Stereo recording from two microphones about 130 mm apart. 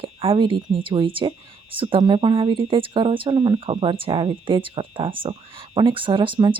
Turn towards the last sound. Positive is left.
turn(degrees=-40)  # may be behind; listen again after turning